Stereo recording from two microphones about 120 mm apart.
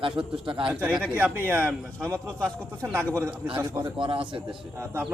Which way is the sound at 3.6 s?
20° right (ahead or behind).